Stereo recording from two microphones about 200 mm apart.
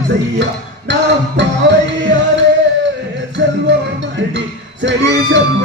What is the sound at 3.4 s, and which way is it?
Music, 60° right (ahead or behind).